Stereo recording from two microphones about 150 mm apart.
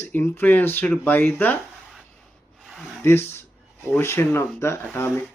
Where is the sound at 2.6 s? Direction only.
Centre (ahead or behind).